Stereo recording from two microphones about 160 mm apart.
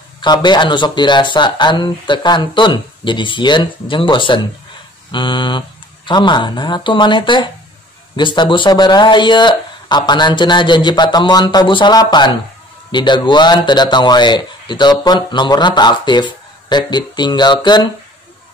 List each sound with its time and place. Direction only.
0.2 s a man's voice: 30° left (ahead or behind)